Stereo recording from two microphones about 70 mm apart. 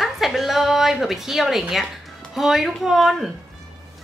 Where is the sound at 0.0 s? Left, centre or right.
Centre.